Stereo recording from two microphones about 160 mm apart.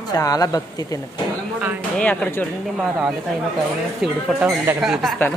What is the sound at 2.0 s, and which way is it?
Speech, 10° left (ahead or behind).